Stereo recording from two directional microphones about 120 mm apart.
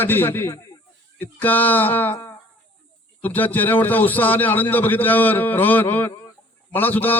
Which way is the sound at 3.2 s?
15° left (ahead or behind).